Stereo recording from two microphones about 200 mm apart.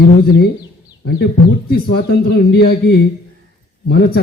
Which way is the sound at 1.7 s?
55° left (ahead or behind).